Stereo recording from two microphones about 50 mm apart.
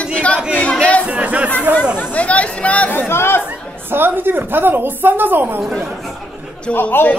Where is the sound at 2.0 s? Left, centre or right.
Left.